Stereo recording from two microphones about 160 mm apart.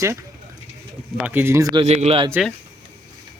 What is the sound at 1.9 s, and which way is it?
Speech, 40° right (ahead or behind).